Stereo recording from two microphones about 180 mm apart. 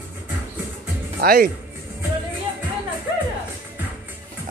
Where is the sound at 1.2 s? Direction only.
60° right (ahead or behind).